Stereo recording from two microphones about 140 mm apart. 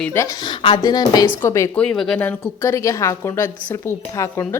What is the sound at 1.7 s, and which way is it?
Speech, 5° left (ahead or behind).